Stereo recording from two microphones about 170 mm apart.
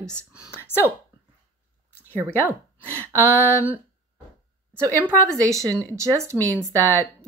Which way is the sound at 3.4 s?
10° right (ahead or behind).